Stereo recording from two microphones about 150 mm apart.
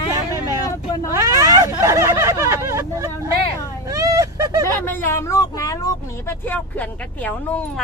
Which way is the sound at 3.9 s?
20° right (ahead or behind).